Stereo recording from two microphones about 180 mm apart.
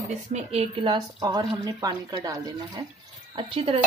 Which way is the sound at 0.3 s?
35° right (ahead or behind).